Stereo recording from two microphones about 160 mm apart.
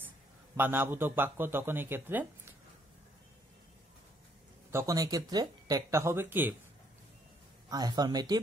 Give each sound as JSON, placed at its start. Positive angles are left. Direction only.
{"t": 0.6, "sound": "a man's voice", "side_deg": -15}
{"t": 4.6, "sound": "speech", "side_deg": -20}
{"t": 7.7, "sound": "speech", "side_deg": -25}